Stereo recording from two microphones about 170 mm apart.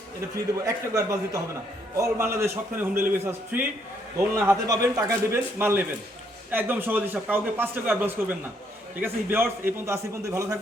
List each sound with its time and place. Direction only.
0.6 s a man's voice: 20° right (ahead or behind)